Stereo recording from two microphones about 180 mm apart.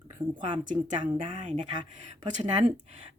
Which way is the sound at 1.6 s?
25° right (ahead or behind).